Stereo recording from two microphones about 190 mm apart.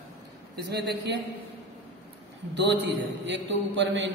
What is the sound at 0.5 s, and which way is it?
Speech, 55° right (ahead or behind).